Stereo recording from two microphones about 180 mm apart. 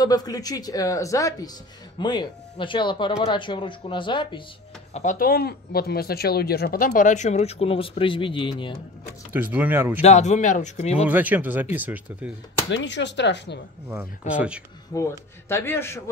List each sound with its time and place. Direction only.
0.0 s speech: 20° left (ahead or behind)
4.9 s speech: 50° left (ahead or behind); by 8.7 s 30° left (ahead or behind)
9.3 s speech: 10° right (ahead or behind)
10.0 s speech: 40° left (ahead or behind)
11.1 s speech: 10° right (ahead or behind)
12.7 s speech: 80° left
13.8 s speech: 10° right (ahead or behind)
15.0 s a man's voice: 15° left (ahead or behind)